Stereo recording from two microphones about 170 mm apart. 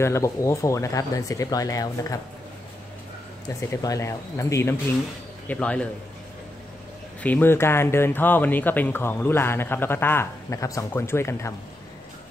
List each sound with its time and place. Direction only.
0.0 s speech: 15° left (ahead or behind)
3.4 s speech: 20° left (ahead or behind)
7.2 s speech: 10° left (ahead or behind)